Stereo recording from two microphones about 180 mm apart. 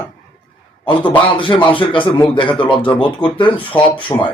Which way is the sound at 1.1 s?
30° left (ahead or behind).